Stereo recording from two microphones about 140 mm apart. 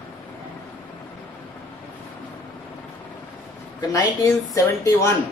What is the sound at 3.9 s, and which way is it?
A man's voice, 25° left (ahead or behind).